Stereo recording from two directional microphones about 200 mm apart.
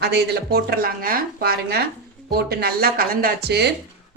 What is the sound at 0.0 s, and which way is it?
Speech, 55° right (ahead or behind).